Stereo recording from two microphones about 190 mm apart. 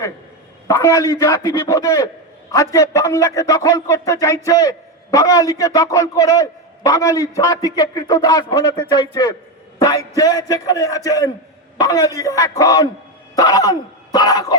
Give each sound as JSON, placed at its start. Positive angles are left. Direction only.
{"t": 0.7, "sound": "a man's voice", "side_deg": 15}